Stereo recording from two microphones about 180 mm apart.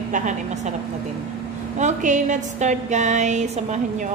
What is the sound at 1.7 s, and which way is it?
A woman's voice, 45° right (ahead or behind).